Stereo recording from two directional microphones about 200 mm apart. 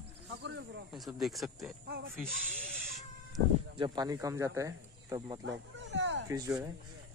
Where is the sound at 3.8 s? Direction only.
20° right (ahead or behind).